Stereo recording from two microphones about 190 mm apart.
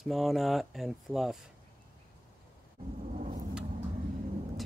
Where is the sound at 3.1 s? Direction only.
45° right (ahead or behind).